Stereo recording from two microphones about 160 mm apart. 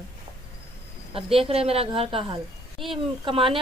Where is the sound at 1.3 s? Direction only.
35° right (ahead or behind).